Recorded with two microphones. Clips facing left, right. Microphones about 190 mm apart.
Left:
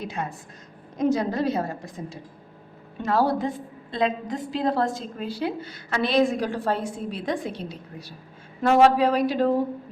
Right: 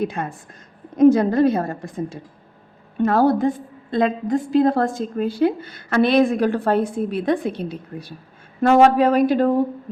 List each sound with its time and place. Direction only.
0.0 s a woman's voice: 55° right (ahead or behind)